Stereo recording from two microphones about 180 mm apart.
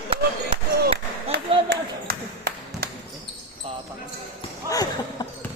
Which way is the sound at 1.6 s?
60° right (ahead or behind).